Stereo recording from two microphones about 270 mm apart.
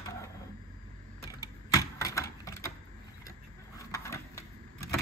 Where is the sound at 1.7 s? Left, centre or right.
Centre.